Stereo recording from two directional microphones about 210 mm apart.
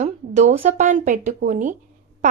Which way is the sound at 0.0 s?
35° right (ahead or behind).